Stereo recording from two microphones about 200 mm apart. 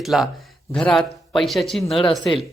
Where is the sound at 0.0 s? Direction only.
Centre (ahead or behind).